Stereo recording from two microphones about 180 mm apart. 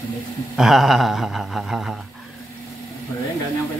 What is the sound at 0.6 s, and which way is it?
Speech, centre (ahead or behind).